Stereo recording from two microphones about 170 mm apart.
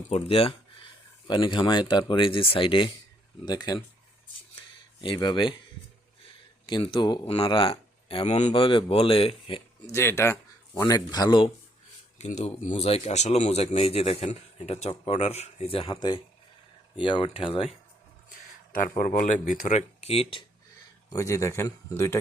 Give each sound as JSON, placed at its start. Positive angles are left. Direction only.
{"t": 0.1, "sound": "speech", "side_deg": 35}
{"t": 4.9, "sound": "speech", "side_deg": 30}
{"t": 6.7, "sound": "speech", "side_deg": 30}
{"t": 9.9, "sound": "a man's voice", "side_deg": 15}
{"t": 12.2, "sound": "speech", "side_deg": 40}
{"t": 18.3, "sound": "a sound", "side_deg": 55}
{"t": 18.9, "sound": "speech", "side_deg": 50}
{"t": 21.1, "sound": "a man's voice", "side_deg": 15}